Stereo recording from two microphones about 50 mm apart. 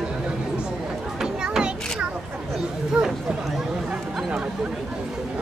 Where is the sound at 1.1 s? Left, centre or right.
Centre.